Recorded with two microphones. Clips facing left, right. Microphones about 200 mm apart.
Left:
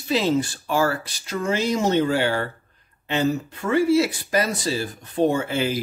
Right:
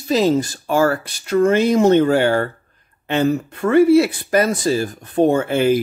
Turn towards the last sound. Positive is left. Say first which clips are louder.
# right 7 dB
turn(degrees=-55)  # may be behind; listen again after turning